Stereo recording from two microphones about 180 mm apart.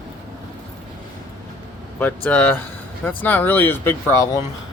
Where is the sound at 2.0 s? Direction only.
10° left (ahead or behind).